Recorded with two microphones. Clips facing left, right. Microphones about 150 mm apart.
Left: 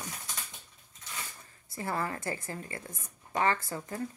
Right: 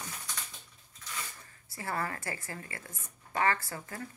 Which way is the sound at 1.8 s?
20° left (ahead or behind).